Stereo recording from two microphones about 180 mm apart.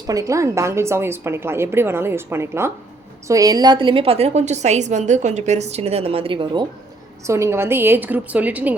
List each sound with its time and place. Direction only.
0.1 s a woman's voice: 20° right (ahead or behind)
7.3 s a woman's voice: 15° right (ahead or behind)